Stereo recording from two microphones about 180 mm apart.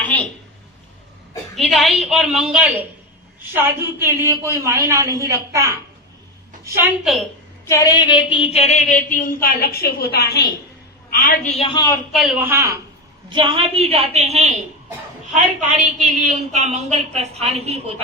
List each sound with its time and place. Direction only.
1.5 s a woman's voice: centre (ahead or behind); by 5.7 s 15° right (ahead or behind)
7.0 s a woman's voice: centre (ahead or behind)
7.6 s speech: 15° left (ahead or behind); by 11.5 s 55° left (ahead or behind)
11.5 s a man's voice: 30° left (ahead or behind)
12.1 s a man's voice: 5° right (ahead or behind)
13.3 s a woman's voice: 25° right (ahead or behind)